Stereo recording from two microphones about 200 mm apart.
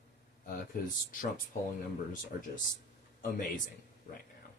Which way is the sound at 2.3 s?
45° left (ahead or behind).